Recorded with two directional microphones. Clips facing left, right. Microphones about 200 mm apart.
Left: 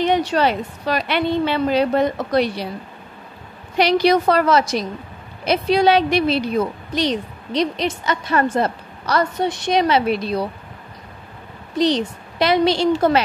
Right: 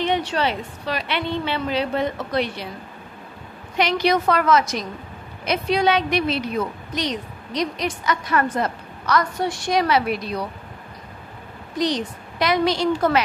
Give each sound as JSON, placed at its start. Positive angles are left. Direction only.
{"t": 0.0, "sound": "a woman's voice", "side_deg": 40}
{"t": 3.7, "sound": "a woman's voice", "side_deg": 35}
{"t": 11.8, "sound": "a woman's voice", "side_deg": 30}